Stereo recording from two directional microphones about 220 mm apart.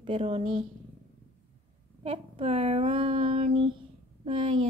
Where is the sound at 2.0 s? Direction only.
25° right (ahead or behind).